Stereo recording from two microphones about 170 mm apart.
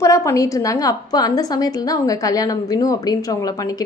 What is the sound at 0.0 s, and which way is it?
A woman's voice, 20° left (ahead or behind).